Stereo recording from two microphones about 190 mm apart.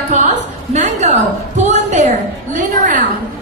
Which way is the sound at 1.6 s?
40° right (ahead or behind).